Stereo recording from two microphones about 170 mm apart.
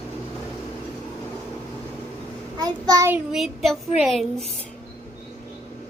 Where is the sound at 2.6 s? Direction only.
20° right (ahead or behind).